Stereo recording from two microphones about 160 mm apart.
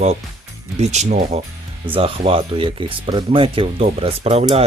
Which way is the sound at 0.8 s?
45° right (ahead or behind).